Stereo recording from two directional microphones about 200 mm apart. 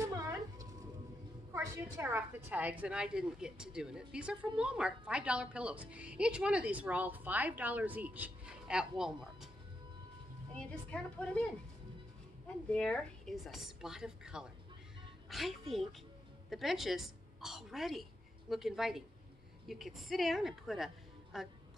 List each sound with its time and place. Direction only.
0.0 s a sound: 15° right (ahead or behind)
1.5 s a woman's voice: 15° right (ahead or behind)
10.6 s a woman's voice: 5° left (ahead or behind)
12.6 s a woman's voice: 5° left (ahead or behind)